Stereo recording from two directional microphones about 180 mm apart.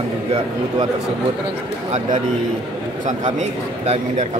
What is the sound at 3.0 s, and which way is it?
Speech, 40° right (ahead or behind).